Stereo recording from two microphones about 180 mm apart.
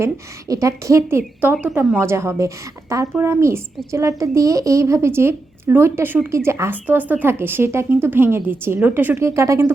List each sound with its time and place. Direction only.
0.0 s a woman's voice: 20° right (ahead or behind)